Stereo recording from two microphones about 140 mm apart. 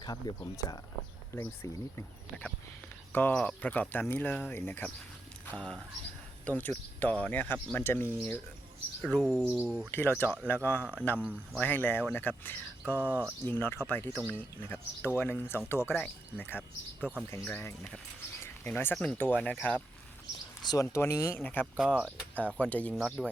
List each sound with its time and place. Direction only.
0.0 s speech: 30° left (ahead or behind)
3.1 s speech: 15° left (ahead or behind)
9.0 s speech: centre (ahead or behind)
9.9 s speech: 15° left (ahead or behind)
11.2 s speech: 10° right (ahead or behind)
11.6 s speech: 10° left (ahead or behind)
13.0 s speech: 10° right (ahead or behind)
13.4 s speech: 15° left (ahead or behind)
22.0 s speech: 10° right (ahead or behind)
22.5 s speech: 10° left (ahead or behind)